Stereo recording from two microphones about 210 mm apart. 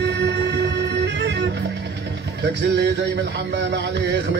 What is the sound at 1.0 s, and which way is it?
Music, 55° right (ahead or behind).